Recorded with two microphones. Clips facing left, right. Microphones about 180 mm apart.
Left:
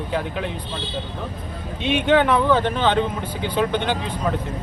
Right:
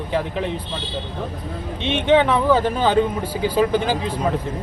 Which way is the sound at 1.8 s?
Centre (ahead or behind).